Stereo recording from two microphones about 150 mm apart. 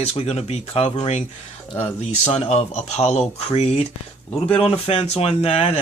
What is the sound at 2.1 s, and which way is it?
Speech, 50° left (ahead or behind).